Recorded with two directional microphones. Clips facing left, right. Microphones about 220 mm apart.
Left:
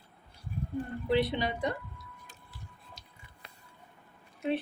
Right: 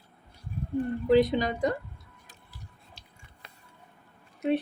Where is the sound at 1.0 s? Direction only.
40° right (ahead or behind).